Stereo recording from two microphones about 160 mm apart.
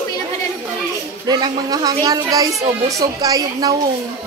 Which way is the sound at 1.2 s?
25° right (ahead or behind).